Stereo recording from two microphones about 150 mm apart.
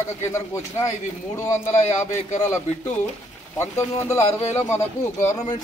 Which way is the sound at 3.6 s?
20° left (ahead or behind).